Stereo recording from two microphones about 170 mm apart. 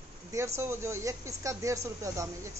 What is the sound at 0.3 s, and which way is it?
A woman's voice, 15° right (ahead or behind).